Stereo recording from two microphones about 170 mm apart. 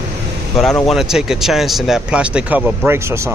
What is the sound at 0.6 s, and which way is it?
Speech, centre (ahead or behind).